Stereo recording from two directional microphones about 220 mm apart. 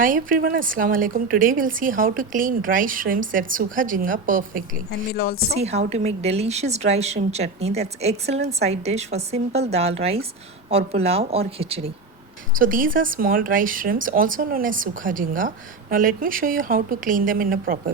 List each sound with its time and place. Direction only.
0.0 s speech: 40° right (ahead or behind)
4.9 s a woman's voice: 45° left (ahead or behind)
5.5 s a woman's voice: 30° right (ahead or behind)
12.5 s speech: 40° right (ahead or behind)